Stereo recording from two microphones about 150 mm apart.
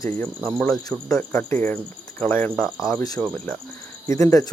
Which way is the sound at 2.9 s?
20° left (ahead or behind).